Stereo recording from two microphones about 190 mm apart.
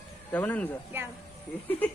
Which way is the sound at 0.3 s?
10° left (ahead or behind).